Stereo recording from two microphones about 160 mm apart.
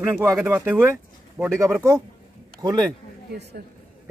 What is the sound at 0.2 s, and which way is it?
Speech, 15° right (ahead or behind).